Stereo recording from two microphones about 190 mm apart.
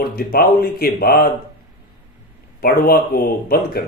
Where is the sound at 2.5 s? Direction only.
55° left (ahead or behind).